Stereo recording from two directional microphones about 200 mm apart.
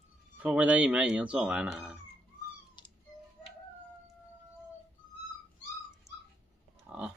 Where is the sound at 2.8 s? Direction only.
25° left (ahead or behind).